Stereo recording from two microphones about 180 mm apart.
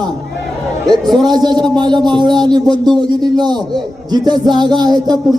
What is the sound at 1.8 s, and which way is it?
A child's voice, 25° right (ahead or behind).